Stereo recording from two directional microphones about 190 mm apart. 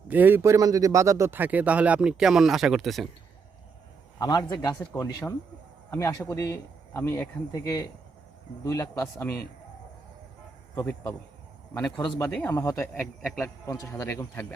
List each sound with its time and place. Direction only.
0.1 s a man's voice: 10° right (ahead or behind)
4.2 s a man's voice: 20° left (ahead or behind)
5.9 s speech: 15° left (ahead or behind)
10.8 s speech: 10° left (ahead or behind)